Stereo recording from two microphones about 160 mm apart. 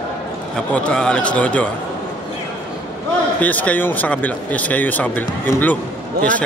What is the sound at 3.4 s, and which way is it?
Speech, 10° left (ahead or behind).